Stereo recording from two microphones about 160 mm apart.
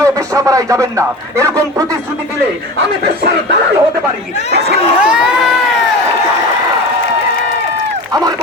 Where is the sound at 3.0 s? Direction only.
90° right.